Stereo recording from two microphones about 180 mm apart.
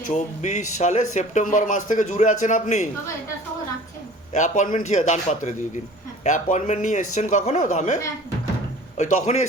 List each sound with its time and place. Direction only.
0.1 s speech: 40° left (ahead or behind)
4.3 s a man's voice: 40° left (ahead or behind)
9.0 s a man's voice: 40° left (ahead or behind)